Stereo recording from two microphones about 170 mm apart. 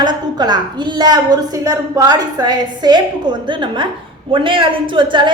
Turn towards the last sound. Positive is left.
turn(degrees=-30)  # may be behind; listen again after turning